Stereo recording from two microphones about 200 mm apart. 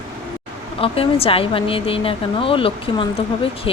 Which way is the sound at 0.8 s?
30° left (ahead or behind).